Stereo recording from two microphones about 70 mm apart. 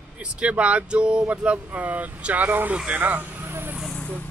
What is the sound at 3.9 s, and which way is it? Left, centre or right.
Vehicle, centre.